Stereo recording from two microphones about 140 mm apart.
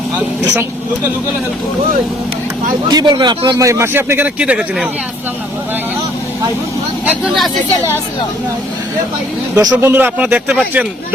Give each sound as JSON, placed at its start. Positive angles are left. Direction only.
{"t": 2.9, "sound": "a man's voice", "side_deg": -30}
{"t": 7.0, "sound": "speech", "side_deg": -10}
{"t": 9.6, "sound": "a man's voice", "side_deg": -25}
{"t": 9.9, "sound": "speech", "side_deg": -15}